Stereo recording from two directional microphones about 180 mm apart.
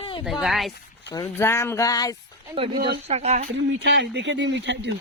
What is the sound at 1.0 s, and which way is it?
Speech, 15° left (ahead or behind).